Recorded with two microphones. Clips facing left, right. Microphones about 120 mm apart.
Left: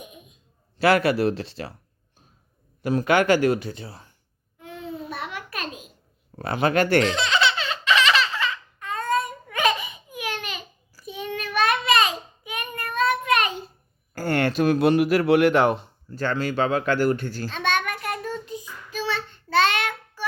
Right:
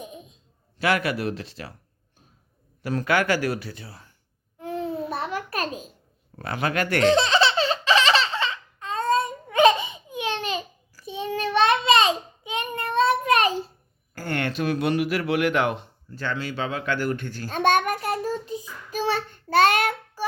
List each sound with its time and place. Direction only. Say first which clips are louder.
0.0 s a sound: right 5 dB; 30° right (ahead or behind)
0.8 s speech: left 5 dB; 35° left (ahead or behind)
2.8 s speech: left 3 dB; 20° left (ahead or behind)
4.6 s babbling: right 6 dB; 35° right (ahead or behind)
6.4 s speech: left 5 dB; 25° left (ahead or behind)
7.0 s laughter: right 4 dB; 35° right (ahead or behind)
11.0 s child singing: right 4 dB; 30° right (ahead or behind)
14.2 s speech: left 5 dB; 40° left (ahead or behind)
17.5 s child singing: right 6 dB; 45° right (ahead or behind)
18.9 s child singing: right 3 dB; 45° right (ahead or behind)